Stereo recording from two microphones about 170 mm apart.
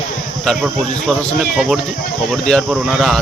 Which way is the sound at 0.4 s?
Centre (ahead or behind).